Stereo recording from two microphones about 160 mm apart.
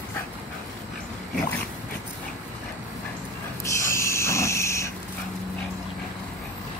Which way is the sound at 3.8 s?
15° left (ahead or behind).